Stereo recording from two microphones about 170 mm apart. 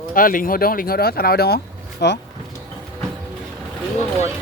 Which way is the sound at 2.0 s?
85° left.